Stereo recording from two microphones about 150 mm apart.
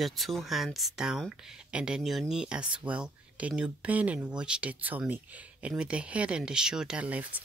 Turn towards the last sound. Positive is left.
turn(degrees=-10)  # may be behind; listen again after turning